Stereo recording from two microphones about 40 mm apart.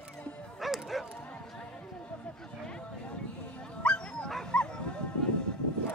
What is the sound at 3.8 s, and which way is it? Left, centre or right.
Dog, left.